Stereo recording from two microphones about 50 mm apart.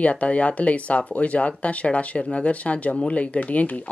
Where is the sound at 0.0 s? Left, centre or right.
Left.